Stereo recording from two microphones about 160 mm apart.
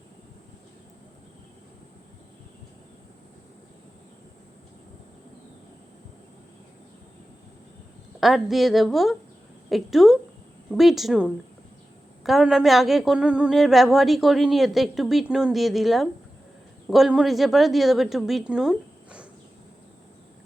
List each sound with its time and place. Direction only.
8.2 s a woman's voice: centre (ahead or behind)